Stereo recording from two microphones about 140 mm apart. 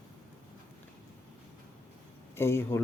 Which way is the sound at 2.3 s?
15° left (ahead or behind).